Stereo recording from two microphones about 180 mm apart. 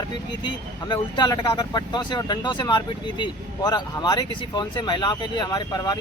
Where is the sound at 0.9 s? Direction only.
25° left (ahead or behind).